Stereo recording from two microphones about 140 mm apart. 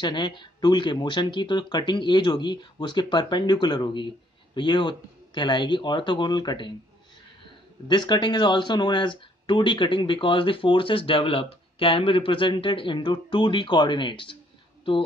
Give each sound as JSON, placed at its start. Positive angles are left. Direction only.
{"t": 0.0, "sound": "speech", "side_deg": 30}
{"t": 7.9, "sound": "speech", "side_deg": 30}